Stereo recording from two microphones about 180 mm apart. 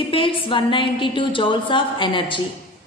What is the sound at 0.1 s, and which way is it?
A woman's voice, 30° left (ahead or behind).